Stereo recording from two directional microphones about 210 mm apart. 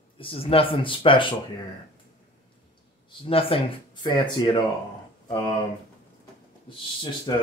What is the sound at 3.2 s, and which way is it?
Speech, 25° left (ahead or behind).